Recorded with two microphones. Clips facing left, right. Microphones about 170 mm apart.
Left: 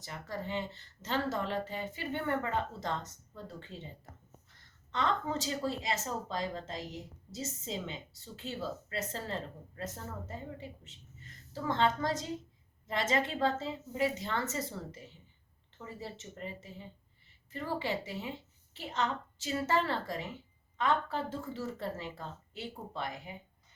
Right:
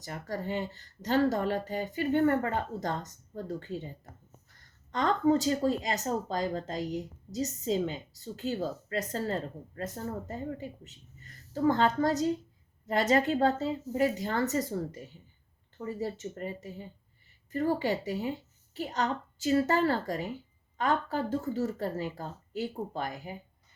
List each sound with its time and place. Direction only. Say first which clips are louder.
0.0 s speech: right 4 dB; 40° right (ahead or behind)
4.9 s speech: right 8 dB; 40° right (ahead or behind)